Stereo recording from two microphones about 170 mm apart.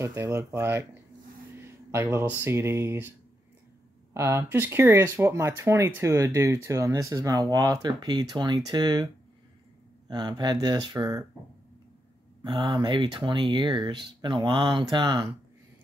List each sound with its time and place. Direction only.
0.0 s speech: 15° right (ahead or behind)
1.6 s a sound: 15° right (ahead or behind)
2.4 s speech: 15° right (ahead or behind)
10.0 s speech: 25° right (ahead or behind)
12.4 s speech: 25° right (ahead or behind)